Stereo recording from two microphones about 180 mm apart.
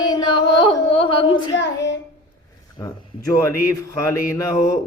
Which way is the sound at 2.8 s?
20° left (ahead or behind).